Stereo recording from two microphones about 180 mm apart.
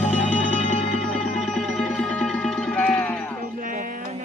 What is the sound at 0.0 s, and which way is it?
Music, 10° left (ahead or behind).